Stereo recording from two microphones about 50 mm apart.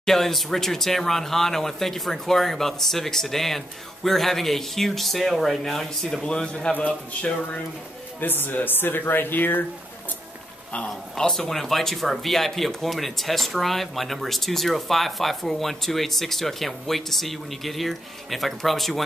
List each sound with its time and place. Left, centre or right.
0.0 s speech: centre
6.2 s speech: centre
8.2 s speech: left
11.1 s speech: centre